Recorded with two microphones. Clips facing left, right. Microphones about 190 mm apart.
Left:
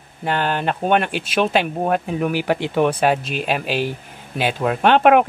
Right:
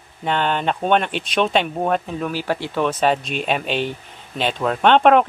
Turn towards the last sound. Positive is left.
turn(degrees=10)  # may be behind; listen again after turning